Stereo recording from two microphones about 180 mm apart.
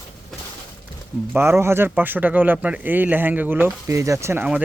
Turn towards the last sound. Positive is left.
turn(degrees=-10)  # may be behind; listen again after turning